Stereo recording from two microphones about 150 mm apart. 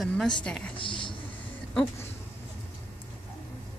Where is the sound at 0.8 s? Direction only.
35° left (ahead or behind).